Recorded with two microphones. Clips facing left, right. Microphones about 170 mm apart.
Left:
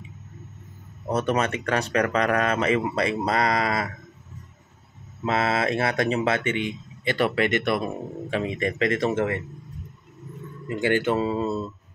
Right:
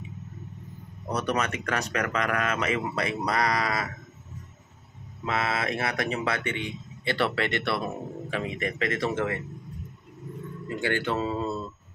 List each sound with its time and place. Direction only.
1.1 s a man's voice: 25° left (ahead or behind)
5.2 s a man's voice: 30° left (ahead or behind)
8.4 s a man's voice: 30° left (ahead or behind)
10.8 s speech: 15° left (ahead or behind)